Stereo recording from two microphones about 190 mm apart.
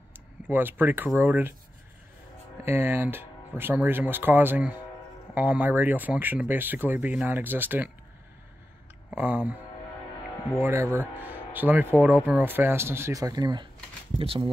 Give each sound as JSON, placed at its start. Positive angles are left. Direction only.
{"t": 0.5, "sound": "speech", "side_deg": -10}
{"t": 2.6, "sound": "speech", "side_deg": -10}
{"t": 9.1, "sound": "speech", "side_deg": -10}
{"t": 10.6, "sound": "speech", "side_deg": -15}